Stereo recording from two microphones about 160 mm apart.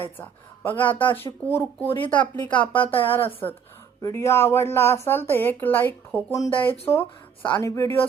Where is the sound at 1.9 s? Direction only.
30° left (ahead or behind).